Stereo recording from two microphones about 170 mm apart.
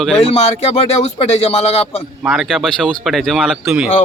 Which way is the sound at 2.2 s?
Centre (ahead or behind).